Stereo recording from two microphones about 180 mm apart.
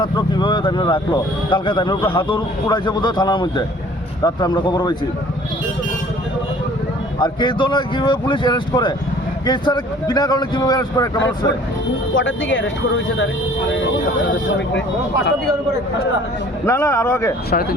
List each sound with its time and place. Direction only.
0.0 s speech: 25° left (ahead or behind)
7.2 s speech: 25° left (ahead or behind)
12.1 s speech: 90° left
16.6 s a man's voice: 15° left (ahead or behind)
17.5 s speech: 55° left (ahead or behind)